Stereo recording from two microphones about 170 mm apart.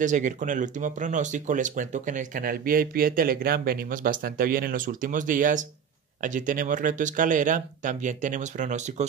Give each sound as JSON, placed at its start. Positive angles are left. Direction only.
{"t": 0.0, "sound": "speech", "side_deg": -45}